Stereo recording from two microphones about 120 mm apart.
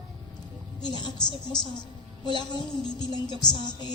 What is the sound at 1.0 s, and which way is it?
Speech, 40° left (ahead or behind).